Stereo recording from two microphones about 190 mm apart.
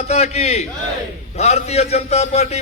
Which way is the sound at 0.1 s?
35° left (ahead or behind).